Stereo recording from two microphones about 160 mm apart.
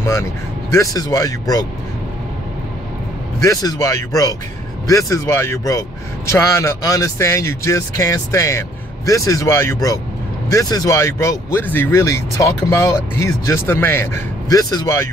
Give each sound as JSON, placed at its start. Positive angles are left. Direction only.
{"t": 0.0, "sound": "speech", "side_deg": 15}
{"t": 3.4, "sound": "speech", "side_deg": 20}